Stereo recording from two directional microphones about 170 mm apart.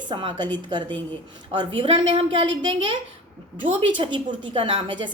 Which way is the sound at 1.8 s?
30° right (ahead or behind).